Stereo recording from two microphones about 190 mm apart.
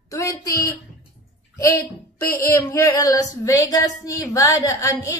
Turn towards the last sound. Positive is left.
turn(degrees=15)  # may be behind; listen again after turning